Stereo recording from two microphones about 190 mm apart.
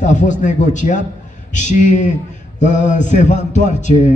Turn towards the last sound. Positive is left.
turn(degrees=40)  # may be behind; listen again after turning